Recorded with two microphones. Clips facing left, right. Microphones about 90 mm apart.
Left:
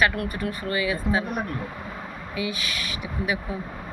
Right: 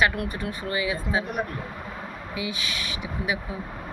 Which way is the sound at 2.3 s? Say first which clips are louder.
Left 2 dB; 20° right (ahead or behind).